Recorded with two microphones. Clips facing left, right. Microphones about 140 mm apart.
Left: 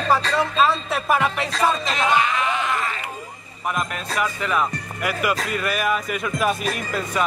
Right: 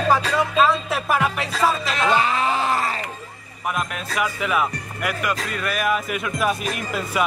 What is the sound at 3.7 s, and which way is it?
Speech, 5° right (ahead or behind).